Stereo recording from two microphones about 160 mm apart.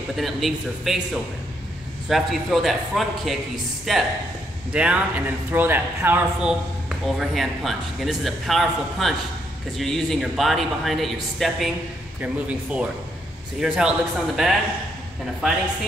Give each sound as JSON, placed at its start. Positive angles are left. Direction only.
{"t": 0.1, "sound": "a man's voice", "side_deg": 0}
{"t": 7.1, "sound": "a man's voice", "side_deg": 0}